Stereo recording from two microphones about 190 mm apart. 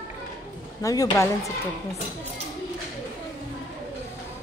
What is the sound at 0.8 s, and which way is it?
Speech, 15° left (ahead or behind).